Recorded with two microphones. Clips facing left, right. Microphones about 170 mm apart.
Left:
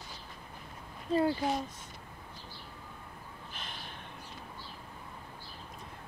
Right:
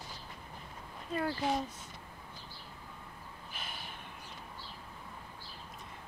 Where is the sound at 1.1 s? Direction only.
25° left (ahead or behind).